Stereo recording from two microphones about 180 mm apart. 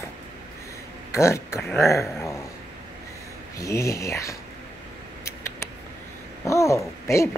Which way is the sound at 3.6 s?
15° left (ahead or behind).